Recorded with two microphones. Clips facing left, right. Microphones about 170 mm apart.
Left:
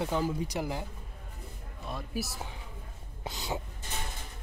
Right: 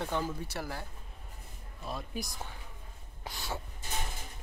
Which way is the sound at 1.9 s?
Centre (ahead or behind).